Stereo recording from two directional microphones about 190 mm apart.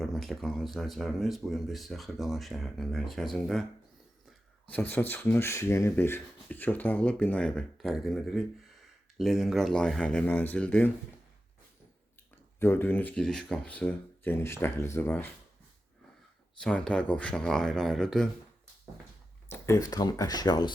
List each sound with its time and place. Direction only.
0.0 s speech: centre (ahead or behind)
4.7 s speech: 10° left (ahead or behind)
12.5 s speech: 10° left (ahead or behind)
16.6 s speech: 5° left (ahead or behind)
19.5 s speech: 15° left (ahead or behind)